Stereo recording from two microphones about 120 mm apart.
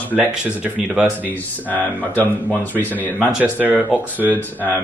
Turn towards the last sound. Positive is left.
turn(degrees=-15)  # may be behind; listen again after turning